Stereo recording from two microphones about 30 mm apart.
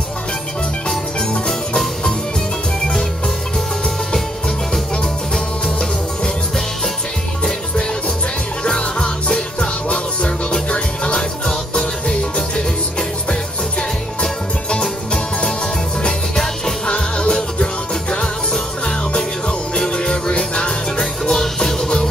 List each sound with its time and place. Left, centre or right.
8.6 s music: left
11.1 s music: left
16.8 s music: left
18.1 s music: left
20.1 s music: left
21.3 s music: centre